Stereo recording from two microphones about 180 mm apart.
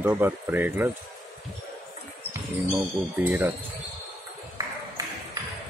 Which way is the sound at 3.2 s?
10° right (ahead or behind).